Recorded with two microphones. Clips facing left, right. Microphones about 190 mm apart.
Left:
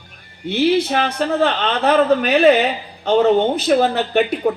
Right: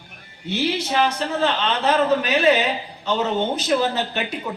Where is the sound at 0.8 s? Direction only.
55° left (ahead or behind).